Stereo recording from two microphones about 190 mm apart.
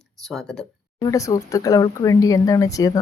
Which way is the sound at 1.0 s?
15° left (ahead or behind).